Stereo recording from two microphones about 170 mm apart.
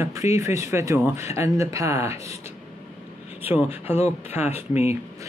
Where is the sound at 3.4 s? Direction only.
15° right (ahead or behind).